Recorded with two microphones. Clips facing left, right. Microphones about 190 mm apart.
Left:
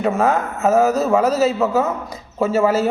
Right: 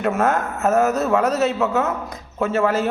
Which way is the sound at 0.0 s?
Centre (ahead or behind).